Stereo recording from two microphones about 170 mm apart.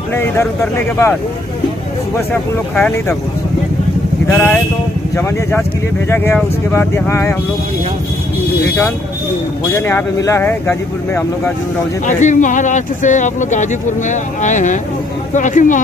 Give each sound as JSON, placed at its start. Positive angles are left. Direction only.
{"t": 0.1, "sound": "speech", "side_deg": 15}
{"t": 2.7, "sound": "speech", "side_deg": 10}
{"t": 4.3, "sound": "speech", "side_deg": 5}
{"t": 9.8, "sound": "speech", "side_deg": 15}
{"t": 12.1, "sound": "speech", "side_deg": 45}